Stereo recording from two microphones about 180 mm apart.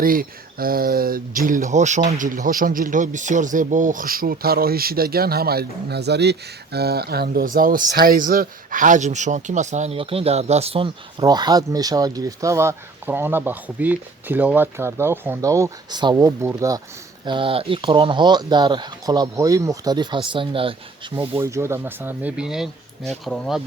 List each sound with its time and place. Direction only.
0.0 s speech: 50° right (ahead or behind); by 16.8 s 20° right (ahead or behind)
17.2 s speech: 30° right (ahead or behind)
21.3 s speech: 15° right (ahead or behind); by 23.6 s centre (ahead or behind)